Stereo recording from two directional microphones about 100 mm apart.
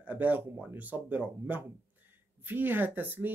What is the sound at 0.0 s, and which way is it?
Speech, 15° right (ahead or behind).